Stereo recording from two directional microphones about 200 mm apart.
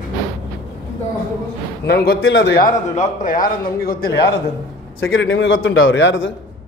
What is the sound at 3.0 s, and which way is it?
A man's voice, 40° left (ahead or behind).